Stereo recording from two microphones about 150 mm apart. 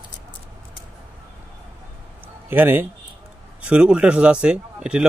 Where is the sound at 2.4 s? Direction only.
15° right (ahead or behind).